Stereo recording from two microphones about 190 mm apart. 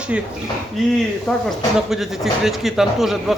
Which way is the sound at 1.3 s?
Centre (ahead or behind).